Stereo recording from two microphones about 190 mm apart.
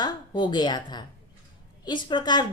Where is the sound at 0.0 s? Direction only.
25° left (ahead or behind).